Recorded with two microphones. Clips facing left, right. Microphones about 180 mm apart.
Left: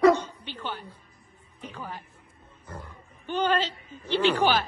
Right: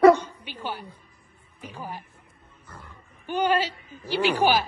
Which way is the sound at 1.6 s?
10° right (ahead or behind).